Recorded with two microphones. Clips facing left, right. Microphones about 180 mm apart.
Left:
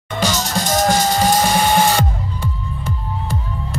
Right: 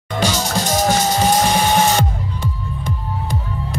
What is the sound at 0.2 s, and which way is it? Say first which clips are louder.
Music: right 1 dB; 10° right (ahead or behind).